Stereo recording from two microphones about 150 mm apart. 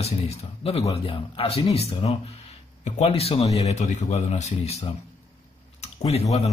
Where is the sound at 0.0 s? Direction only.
45° left (ahead or behind).